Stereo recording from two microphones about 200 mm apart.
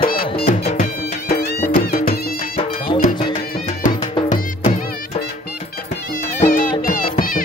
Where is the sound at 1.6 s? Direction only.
50° left (ahead or behind).